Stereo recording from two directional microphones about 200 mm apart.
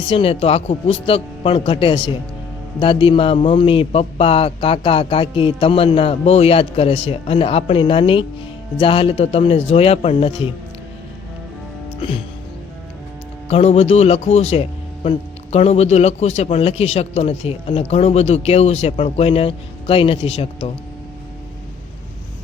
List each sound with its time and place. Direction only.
0.1 s a man's voice: 30° left (ahead or behind)
11.9 s music: 25° left (ahead or behind)
13.5 s a man's voice: 30° left (ahead or behind)